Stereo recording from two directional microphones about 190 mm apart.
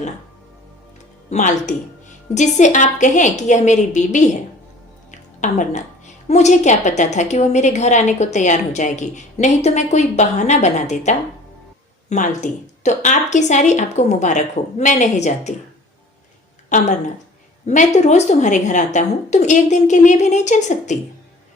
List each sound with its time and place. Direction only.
1.3 s a woman's voice: 40° left (ahead or behind)
5.4 s a woman's voice: 40° left (ahead or behind)
16.6 s a woman's voice: 40° left (ahead or behind)